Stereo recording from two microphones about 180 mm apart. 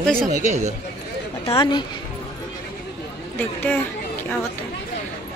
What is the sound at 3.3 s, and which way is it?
Speech, 10° left (ahead or behind).